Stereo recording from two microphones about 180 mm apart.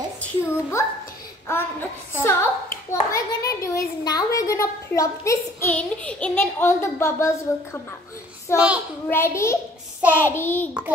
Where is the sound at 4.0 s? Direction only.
20° left (ahead or behind).